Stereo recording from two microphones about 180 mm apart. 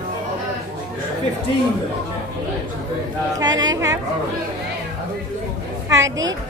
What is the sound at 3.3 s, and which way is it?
Speech, 20° right (ahead or behind).